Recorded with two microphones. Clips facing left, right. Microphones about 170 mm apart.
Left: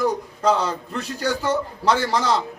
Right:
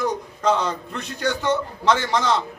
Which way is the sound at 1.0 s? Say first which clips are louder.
Left 2 dB; 35° left (ahead or behind).